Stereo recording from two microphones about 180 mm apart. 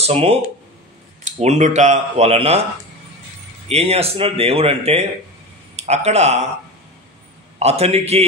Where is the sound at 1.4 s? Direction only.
40° right (ahead or behind).